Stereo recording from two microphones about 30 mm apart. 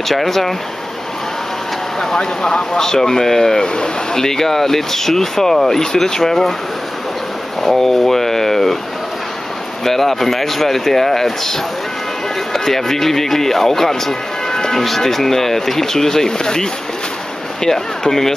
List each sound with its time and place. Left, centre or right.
0.1 s speech: centre
2.0 s speech: centre
3.6 s speech: left
7.6 s speech: centre
9.8 s speech: centre
12.5 s speech: centre
18.0 s speech: centre